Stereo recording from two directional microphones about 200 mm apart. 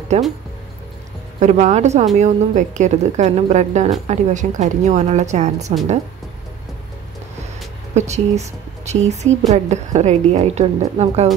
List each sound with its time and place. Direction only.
0.1 s a woman's voice: 35° right (ahead or behind)
1.4 s a woman's voice: 35° right (ahead or behind)
7.9 s a woman's voice: 35° right (ahead or behind)